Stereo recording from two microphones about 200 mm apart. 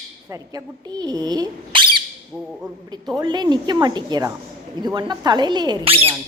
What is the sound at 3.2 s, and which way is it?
A woman's voice, 20° right (ahead or behind).